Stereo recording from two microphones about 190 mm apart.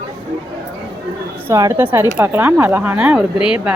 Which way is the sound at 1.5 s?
15° right (ahead or behind).